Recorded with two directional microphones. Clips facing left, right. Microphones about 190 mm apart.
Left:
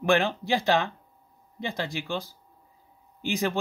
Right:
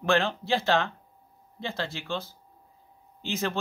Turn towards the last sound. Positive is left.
turn(degrees=15)  # may be behind; listen again after turning